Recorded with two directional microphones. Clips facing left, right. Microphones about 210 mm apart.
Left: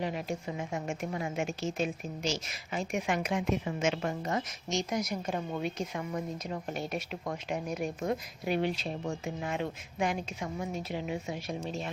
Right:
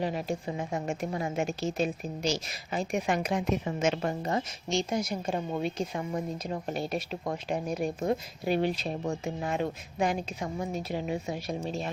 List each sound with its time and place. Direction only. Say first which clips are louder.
0.0 s a woman's voice: right 3 dB; 35° right (ahead or behind)